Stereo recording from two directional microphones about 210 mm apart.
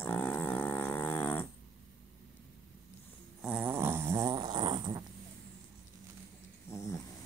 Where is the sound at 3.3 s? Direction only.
5° right (ahead or behind).